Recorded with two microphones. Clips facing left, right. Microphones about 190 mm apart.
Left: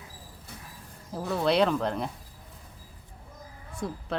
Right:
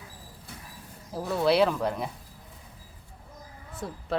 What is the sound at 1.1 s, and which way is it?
Speech, centre (ahead or behind).